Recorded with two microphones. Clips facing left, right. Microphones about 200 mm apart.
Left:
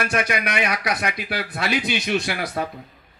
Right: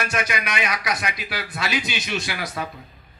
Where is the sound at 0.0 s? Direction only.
60° left (ahead or behind).